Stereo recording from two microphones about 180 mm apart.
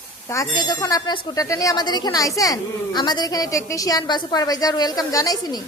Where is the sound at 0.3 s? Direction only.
20° left (ahead or behind).